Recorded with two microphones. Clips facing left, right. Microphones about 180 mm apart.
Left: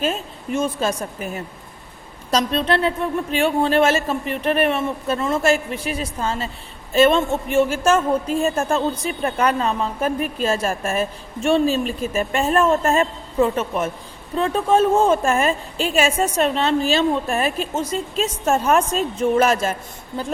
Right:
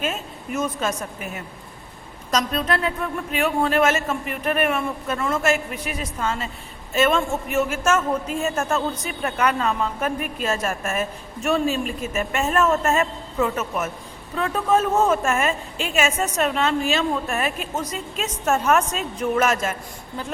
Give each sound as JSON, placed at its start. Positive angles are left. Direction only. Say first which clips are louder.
{"t": 0.0, "sound": "a woman's voice", "louder": "left 4 dB", "side_deg": 30}